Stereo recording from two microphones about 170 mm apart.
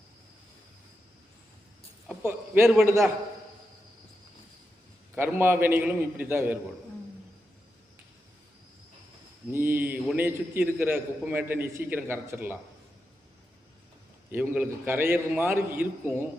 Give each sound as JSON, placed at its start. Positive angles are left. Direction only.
{"t": 2.2, "sound": "a man's voice", "side_deg": -5}
{"t": 5.1, "sound": "a man's voice", "side_deg": -10}
{"t": 9.5, "sound": "a man's voice", "side_deg": -15}
{"t": 14.3, "sound": "a man's voice", "side_deg": -10}